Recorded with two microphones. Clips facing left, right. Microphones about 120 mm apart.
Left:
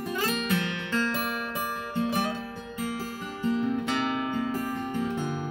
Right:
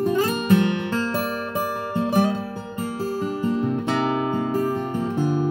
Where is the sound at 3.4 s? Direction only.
40° right (ahead or behind).